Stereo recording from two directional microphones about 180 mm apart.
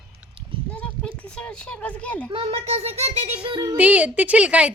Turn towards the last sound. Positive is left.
turn(degrees=-5)  # may be behind; listen again after turning